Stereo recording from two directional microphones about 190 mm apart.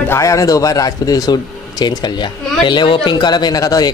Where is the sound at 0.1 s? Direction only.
15° left (ahead or behind).